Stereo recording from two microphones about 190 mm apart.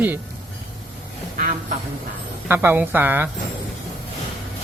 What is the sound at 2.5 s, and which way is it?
Speech, 10° right (ahead or behind).